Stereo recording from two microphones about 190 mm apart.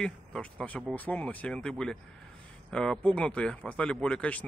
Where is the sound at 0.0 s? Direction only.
5° left (ahead or behind).